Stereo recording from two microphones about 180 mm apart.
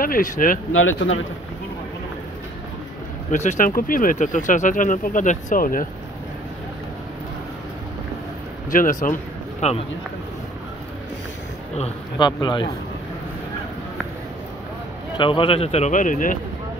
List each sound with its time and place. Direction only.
0.0 s speech: 50° left (ahead or behind)
0.7 s speech: 90° left
3.3 s speech: 45° left (ahead or behind)
8.7 s speech: 50° left (ahead or behind)
9.6 s speech: 35° left (ahead or behind)
11.7 s speech: 35° left (ahead or behind)
12.3 s speech: 25° left (ahead or behind)
15.1 s speech: 30° left (ahead or behind); by 16.3 s 45° left (ahead or behind)